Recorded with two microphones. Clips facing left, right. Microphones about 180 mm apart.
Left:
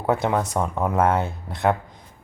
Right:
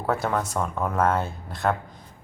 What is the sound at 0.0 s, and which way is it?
Speech, 20° left (ahead or behind).